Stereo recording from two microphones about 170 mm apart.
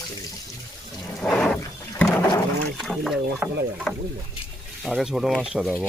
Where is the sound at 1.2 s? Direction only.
5° left (ahead or behind).